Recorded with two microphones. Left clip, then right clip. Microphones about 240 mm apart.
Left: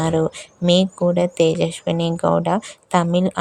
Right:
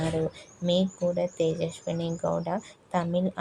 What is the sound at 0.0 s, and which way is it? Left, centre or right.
Speech, left.